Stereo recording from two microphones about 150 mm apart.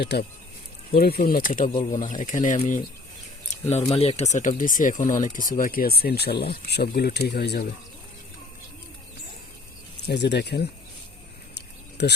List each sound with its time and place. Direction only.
0.0 s speech: 90° left
1.3 s speech: 65° left (ahead or behind)
3.9 s speech: 40° left (ahead or behind); by 7.6 s 90° left
10.1 s speech: 90° left
12.0 s speech: 90° left